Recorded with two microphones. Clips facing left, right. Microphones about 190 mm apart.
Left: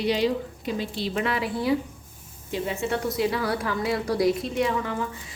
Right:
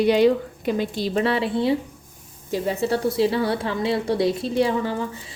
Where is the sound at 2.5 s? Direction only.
35° right (ahead or behind).